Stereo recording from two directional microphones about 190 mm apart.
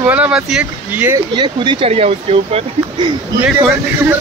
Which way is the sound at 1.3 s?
25° right (ahead or behind).